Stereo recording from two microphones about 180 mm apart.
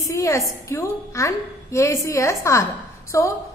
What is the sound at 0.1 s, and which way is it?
A woman's voice, 15° left (ahead or behind).